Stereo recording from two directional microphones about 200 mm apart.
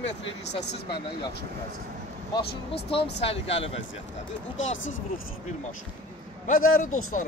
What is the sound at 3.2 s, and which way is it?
Speech, 30° left (ahead or behind).